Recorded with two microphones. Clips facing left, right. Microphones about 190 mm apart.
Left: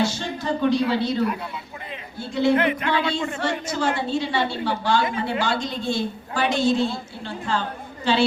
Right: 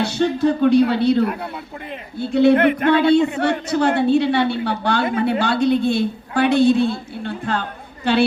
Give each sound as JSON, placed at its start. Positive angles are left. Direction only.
{"t": 0.0, "sound": "a man's voice", "side_deg": -65}